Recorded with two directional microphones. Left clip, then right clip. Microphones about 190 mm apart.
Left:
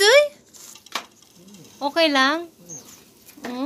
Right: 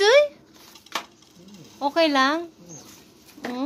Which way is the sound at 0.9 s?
40° right (ahead or behind).